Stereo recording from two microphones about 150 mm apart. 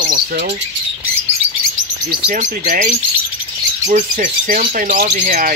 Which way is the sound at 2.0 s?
80° right.